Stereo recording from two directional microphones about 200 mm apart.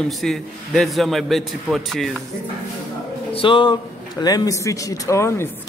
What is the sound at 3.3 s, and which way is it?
Speech, 25° left (ahead or behind).